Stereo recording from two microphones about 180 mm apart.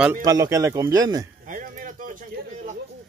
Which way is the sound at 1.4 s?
45° right (ahead or behind).